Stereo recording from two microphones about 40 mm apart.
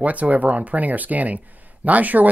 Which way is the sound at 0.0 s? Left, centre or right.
Right.